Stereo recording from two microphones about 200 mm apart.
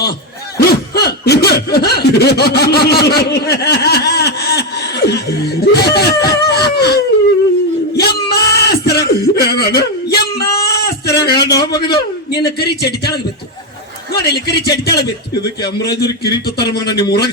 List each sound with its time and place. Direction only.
0.5 s a sound: 50° left (ahead or behind)
11.8 s a man's voice: 55° left (ahead or behind)
14.3 s a man's voice: 55° left (ahead or behind)